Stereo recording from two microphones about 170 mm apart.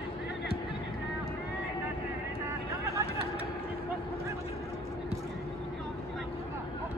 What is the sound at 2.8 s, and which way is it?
Vehicle, 20° right (ahead or behind).